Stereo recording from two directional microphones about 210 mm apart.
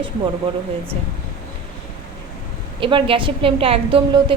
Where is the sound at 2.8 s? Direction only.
25° right (ahead or behind).